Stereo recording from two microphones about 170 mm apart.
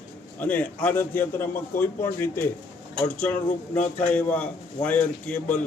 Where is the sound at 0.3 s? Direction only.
10° left (ahead or behind).